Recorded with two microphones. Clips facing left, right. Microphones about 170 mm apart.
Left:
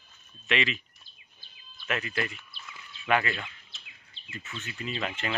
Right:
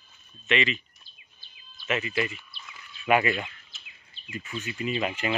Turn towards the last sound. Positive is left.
turn(degrees=-10)  # may be behind; listen again after turning